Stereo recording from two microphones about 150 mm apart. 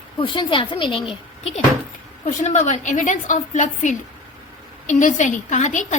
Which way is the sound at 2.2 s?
50° left (ahead or behind).